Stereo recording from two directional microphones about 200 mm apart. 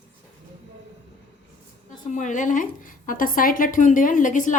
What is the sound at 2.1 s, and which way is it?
Speech, 40° left (ahead or behind).